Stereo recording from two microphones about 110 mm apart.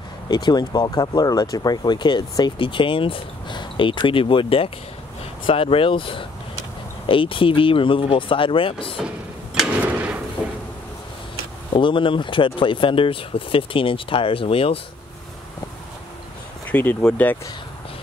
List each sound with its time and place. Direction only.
0.3 s speech: 40° left (ahead or behind)
9.8 s drawer open or close: 15° right (ahead or behind)
10.4 s cupboard open or close: 15° right (ahead or behind)
11.7 s speech: 50° left (ahead or behind)
16.6 s speech: 15° left (ahead or behind)